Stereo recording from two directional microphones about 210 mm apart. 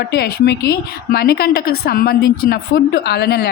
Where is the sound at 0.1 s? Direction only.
50° left (ahead or behind).